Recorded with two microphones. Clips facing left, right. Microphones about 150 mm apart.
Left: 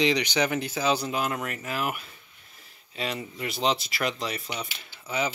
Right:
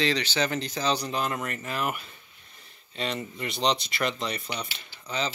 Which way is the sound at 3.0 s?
5° left (ahead or behind).